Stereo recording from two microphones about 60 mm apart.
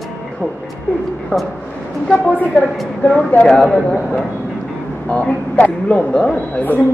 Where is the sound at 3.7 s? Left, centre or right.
Centre.